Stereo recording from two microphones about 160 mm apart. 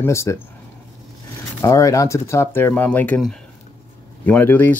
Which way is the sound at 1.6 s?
20° left (ahead or behind).